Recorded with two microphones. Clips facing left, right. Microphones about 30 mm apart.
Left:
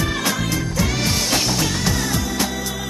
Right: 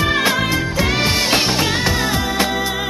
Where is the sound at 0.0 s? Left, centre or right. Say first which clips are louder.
Right 6 dB; right.